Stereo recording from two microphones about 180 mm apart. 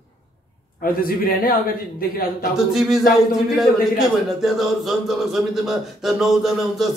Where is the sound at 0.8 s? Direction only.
55° left (ahead or behind).